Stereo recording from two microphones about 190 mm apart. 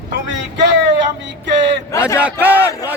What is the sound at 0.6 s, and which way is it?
Speech, 70° right (ahead or behind).